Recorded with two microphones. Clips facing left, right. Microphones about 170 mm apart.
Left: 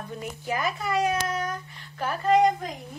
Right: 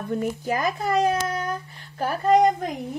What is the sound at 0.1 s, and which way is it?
Speech, 45° right (ahead or behind).